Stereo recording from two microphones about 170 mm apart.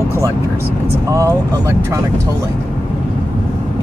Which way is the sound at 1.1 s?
20° right (ahead or behind).